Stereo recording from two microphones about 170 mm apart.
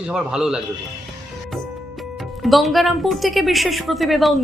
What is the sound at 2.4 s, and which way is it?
A man's voice, centre (ahead or behind).